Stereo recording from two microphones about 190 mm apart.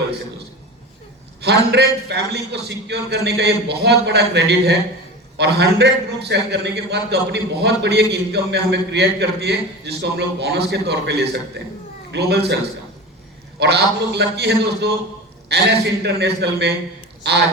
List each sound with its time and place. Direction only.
1.4 s a man's voice: 60° right (ahead or behind)
13.6 s a man's voice: 60° right (ahead or behind)